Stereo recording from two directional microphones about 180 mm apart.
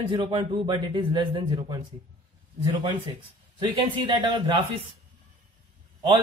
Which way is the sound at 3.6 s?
25° right (ahead or behind).